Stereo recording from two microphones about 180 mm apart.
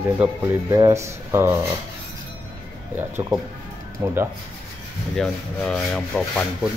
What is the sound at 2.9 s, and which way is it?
Rub, 10° right (ahead or behind).